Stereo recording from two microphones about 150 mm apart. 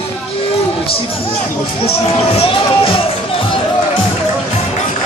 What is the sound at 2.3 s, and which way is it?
Music, 40° left (ahead or behind).